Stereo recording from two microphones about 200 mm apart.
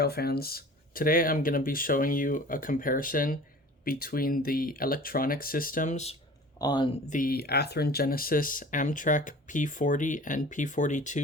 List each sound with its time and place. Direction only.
0.0 s speech: 50° left (ahead or behind); by 6.1 s 35° left (ahead or behind)
6.6 s speech: 20° left (ahead or behind)
7.1 s speech: 45° left (ahead or behind)